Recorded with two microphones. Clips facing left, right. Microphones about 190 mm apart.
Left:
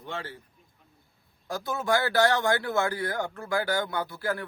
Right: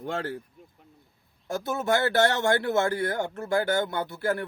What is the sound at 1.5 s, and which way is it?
A man's voice, 25° right (ahead or behind).